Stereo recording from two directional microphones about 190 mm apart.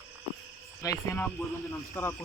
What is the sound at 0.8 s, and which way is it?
Speech, 10° left (ahead or behind).